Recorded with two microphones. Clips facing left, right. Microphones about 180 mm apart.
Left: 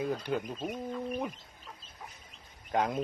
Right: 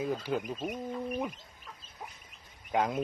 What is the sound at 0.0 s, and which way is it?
Speech, centre (ahead or behind).